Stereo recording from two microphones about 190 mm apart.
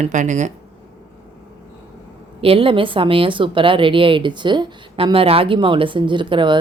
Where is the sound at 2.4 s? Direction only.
30° right (ahead or behind).